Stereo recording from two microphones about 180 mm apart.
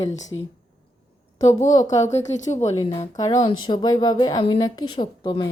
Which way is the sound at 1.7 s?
20° left (ahead or behind).